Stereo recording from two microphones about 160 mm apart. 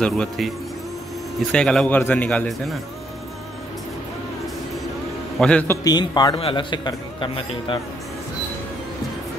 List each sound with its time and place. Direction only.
0.0 s a man's voice: 5° left (ahead or behind)
1.5 s a man's voice: 5° left (ahead or behind)
5.4 s a man's voice: 10° left (ahead or behind)
5.9 s a man's voice: 25° left (ahead or behind)